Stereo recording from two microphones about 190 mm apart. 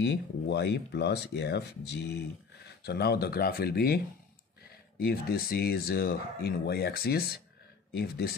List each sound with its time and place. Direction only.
0.0 s speech: 65° left (ahead or behind)